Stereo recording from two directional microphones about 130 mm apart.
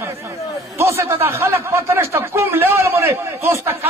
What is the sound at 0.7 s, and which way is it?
A man's voice, 20° right (ahead or behind).